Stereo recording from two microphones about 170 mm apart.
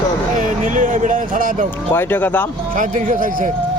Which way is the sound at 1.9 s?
10° left (ahead or behind).